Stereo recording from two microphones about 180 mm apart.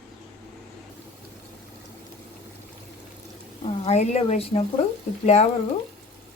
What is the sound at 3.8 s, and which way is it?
Speech, 40° left (ahead or behind).